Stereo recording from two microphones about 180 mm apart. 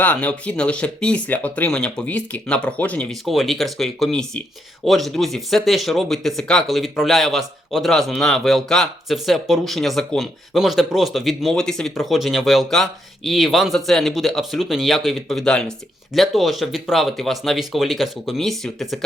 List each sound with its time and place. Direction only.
0.0 s speech: 10° left (ahead or behind)